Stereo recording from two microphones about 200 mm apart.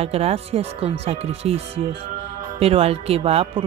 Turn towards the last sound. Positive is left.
turn(degrees=-30)  # may be behind; listen again after turning